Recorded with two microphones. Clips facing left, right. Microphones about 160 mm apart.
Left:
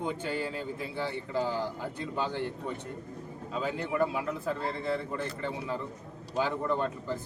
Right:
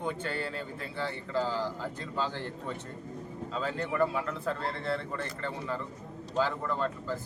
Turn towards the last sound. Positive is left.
turn(degrees=20)  # may be behind; listen again after turning